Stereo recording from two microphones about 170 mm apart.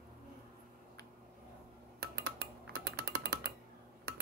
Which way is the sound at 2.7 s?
70° right (ahead or behind).